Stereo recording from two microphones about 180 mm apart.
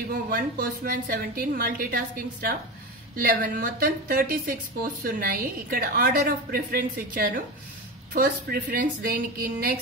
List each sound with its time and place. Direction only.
0.1 s speech: 55° right (ahead or behind)